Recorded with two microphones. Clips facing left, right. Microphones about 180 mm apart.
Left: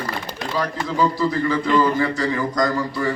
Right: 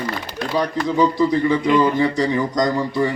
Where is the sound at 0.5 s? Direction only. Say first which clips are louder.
Right 4 dB; 20° right (ahead or behind).